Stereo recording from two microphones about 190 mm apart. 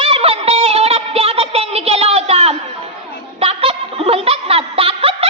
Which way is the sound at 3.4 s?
30° right (ahead or behind).